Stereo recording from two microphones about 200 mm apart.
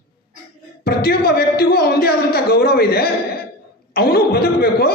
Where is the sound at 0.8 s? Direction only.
50° left (ahead or behind).